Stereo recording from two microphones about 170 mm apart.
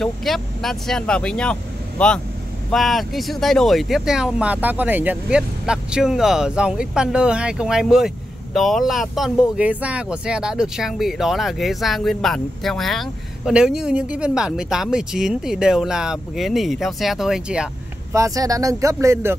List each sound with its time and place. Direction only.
0.0 s speech: centre (ahead or behind)
18.1 s speech: 20° right (ahead or behind)